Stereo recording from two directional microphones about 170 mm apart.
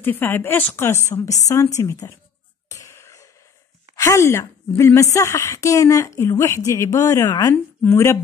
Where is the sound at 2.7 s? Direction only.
15° left (ahead or behind).